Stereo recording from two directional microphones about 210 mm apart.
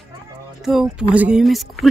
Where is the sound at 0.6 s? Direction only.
Centre (ahead or behind).